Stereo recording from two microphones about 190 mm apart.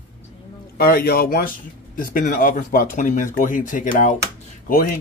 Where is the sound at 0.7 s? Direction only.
55° left (ahead or behind).